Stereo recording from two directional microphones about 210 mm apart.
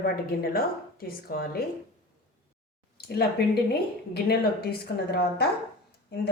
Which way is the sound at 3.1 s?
50° left (ahead or behind).